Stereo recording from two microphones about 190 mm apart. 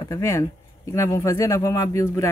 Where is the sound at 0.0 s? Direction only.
15° left (ahead or behind).